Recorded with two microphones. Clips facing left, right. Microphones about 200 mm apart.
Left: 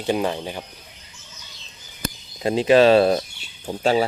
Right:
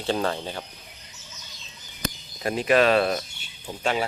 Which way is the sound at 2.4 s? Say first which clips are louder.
Left 5 dB; 25° left (ahead or behind).